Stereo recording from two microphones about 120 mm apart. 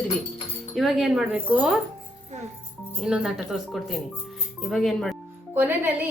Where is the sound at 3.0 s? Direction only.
5° right (ahead or behind).